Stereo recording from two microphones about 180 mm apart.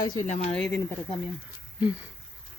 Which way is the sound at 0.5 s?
5° left (ahead or behind).